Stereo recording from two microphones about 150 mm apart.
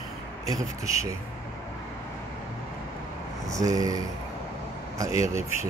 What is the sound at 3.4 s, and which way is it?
Speech, 25° right (ahead or behind).